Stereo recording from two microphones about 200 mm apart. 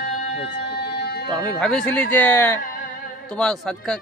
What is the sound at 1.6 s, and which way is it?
A man's voice, 5° left (ahead or behind).